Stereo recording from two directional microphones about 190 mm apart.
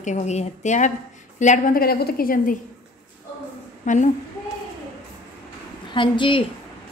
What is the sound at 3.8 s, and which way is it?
Speech, 40° left (ahead or behind).